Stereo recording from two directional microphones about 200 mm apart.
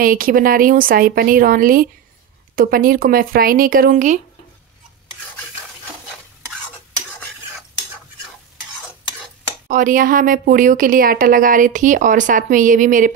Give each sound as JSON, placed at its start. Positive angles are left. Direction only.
{"t": 0.0, "sound": "a woman's voice", "side_deg": -45}
{"t": 9.7, "sound": "speech", "side_deg": -40}